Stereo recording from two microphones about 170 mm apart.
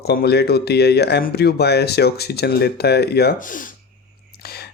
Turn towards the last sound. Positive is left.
turn(degrees=70)  # may be behind; listen again after turning